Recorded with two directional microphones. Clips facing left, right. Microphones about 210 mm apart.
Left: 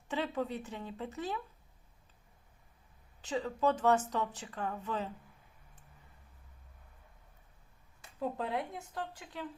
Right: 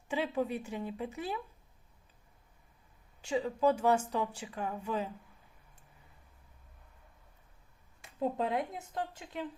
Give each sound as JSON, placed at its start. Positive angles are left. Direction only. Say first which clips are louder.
{"t": 0.1, "sound": "a woman's voice", "louder": "right 2 dB", "side_deg": -10}
{"t": 3.2, "sound": "a woman's voice", "louder": "right 3 dB", "side_deg": -10}
{"t": 8.0, "sound": "speech", "louder": "right 4 dB", "side_deg": -20}